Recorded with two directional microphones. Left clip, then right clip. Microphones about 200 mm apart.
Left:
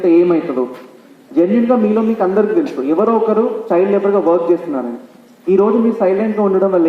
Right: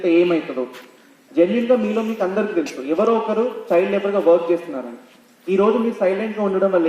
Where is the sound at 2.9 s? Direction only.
45° right (ahead or behind).